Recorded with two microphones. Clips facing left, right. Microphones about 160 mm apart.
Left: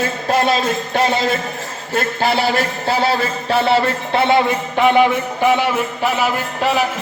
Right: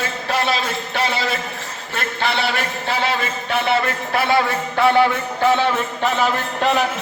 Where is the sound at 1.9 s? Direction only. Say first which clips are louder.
Left 5 dB; 40° left (ahead or behind).